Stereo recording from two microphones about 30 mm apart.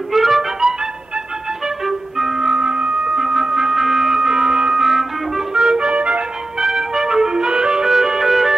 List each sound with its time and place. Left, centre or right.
0.1 s music: centre
2.1 s music: centre
2.4 s music: right
3.2 s music: right
4.7 s music: centre
5.5 s clarinet: right
6.6 s music: centre